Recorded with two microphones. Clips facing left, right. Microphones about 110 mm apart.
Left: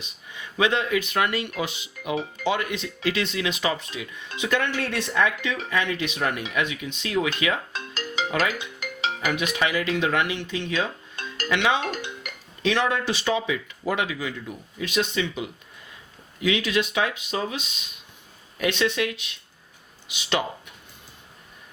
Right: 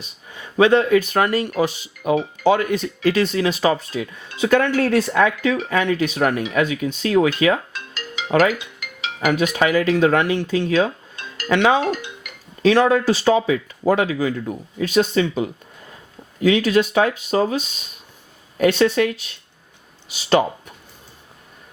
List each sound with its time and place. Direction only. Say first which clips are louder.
0.0 s speech: right 2 dB; 40° right (ahead or behind)
7.7 s music: left 1 dB; 30° left (ahead or behind)
8.3 s speech: right 10 dB; 45° right (ahead or behind)
8.5 s music: left 1 dB; 35° left (ahead or behind)
9.3 s speech: right 9 dB; 40° right (ahead or behind)